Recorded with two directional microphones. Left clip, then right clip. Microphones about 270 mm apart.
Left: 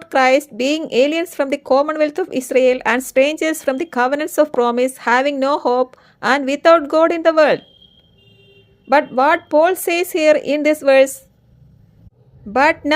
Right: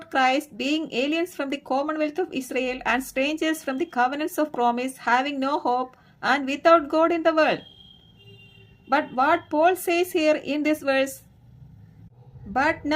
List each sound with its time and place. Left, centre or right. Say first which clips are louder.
0.0 s speech: left 8 dB; left
8.9 s speech: left 8 dB; left
12.5 s a woman's voice: left 9 dB; left